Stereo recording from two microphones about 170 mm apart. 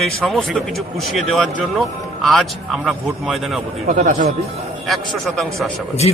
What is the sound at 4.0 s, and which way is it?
Speech, 45° right (ahead or behind).